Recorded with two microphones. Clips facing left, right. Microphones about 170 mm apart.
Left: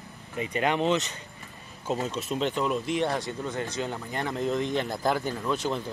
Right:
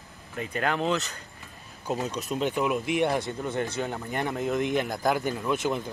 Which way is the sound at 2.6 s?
10° right (ahead or behind).